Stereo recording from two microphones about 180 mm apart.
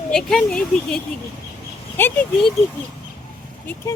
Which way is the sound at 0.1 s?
Centre (ahead or behind).